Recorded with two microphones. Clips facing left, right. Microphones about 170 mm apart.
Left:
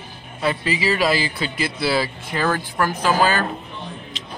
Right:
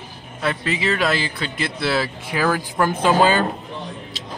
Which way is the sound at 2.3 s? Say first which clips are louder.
Right 1 dB; 10° right (ahead or behind).